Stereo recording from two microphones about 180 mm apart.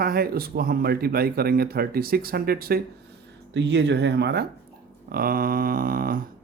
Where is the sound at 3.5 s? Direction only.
75° right (ahead or behind).